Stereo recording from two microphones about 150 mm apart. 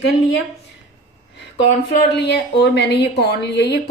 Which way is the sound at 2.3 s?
90° left.